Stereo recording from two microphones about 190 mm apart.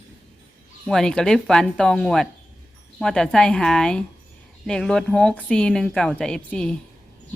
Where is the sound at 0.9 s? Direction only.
5° left (ahead or behind).